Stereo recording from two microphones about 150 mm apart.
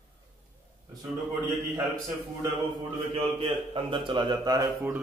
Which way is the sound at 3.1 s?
35° right (ahead or behind).